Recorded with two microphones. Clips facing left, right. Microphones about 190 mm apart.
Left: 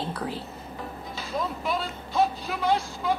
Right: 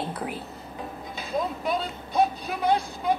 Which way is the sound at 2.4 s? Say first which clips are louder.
Right 1 dB; 20° right (ahead or behind).